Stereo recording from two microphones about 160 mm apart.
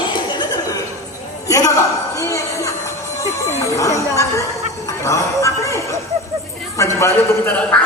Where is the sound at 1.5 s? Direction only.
20° left (ahead or behind).